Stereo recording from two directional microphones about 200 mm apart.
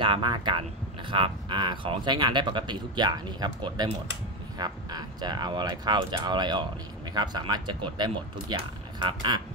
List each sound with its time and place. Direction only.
0.0 s speech: 25° right (ahead or behind)